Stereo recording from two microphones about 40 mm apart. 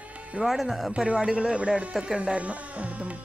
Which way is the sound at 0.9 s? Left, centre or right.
Right.